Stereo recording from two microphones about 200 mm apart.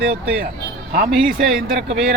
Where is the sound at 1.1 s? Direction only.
Centre (ahead or behind).